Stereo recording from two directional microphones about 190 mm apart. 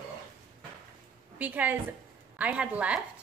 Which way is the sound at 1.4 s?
10° right (ahead or behind).